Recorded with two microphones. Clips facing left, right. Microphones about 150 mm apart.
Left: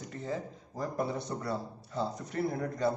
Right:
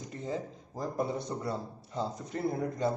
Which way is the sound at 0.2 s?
20° right (ahead or behind).